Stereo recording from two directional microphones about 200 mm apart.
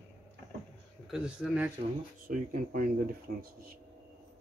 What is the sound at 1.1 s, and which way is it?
Speech, centre (ahead or behind).